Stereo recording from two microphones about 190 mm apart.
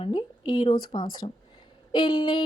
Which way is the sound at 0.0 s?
30° left (ahead or behind).